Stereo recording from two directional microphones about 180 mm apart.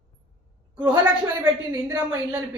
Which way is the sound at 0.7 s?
5° right (ahead or behind).